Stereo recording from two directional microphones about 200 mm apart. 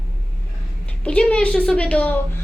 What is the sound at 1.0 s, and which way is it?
A woman's voice, 5° left (ahead or behind).